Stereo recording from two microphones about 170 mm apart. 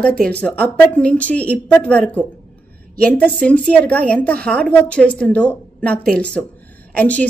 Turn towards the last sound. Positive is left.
turn(degrees=10)  # may be behind; listen again after turning